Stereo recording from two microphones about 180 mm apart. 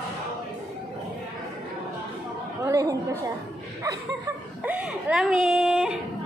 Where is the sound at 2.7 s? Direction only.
20° right (ahead or behind).